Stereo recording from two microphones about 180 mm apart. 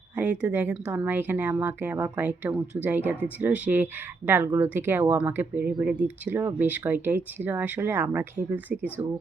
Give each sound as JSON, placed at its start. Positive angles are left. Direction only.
{"t": 0.2, "sound": "speech", "side_deg": -10}
{"t": 4.4, "sound": "speech", "side_deg": -20}